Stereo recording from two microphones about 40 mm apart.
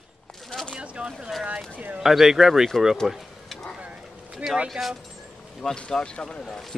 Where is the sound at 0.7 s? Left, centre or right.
Right.